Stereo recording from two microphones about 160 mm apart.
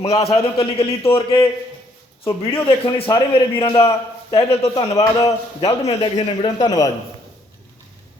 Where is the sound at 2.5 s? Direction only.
35° left (ahead or behind).